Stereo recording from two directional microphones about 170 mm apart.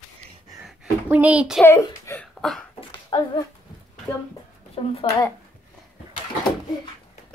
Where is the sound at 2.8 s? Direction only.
25° left (ahead or behind).